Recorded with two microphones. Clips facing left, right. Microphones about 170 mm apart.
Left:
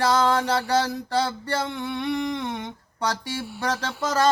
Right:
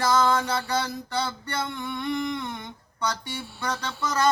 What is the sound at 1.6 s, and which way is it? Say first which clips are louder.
Speech: left 3 dB; 80° left.